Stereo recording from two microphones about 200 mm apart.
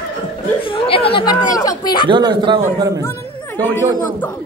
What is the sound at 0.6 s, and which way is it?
Speech, 25° left (ahead or behind).